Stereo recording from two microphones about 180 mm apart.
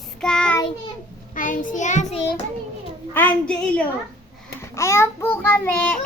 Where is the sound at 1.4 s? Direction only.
45° left (ahead or behind).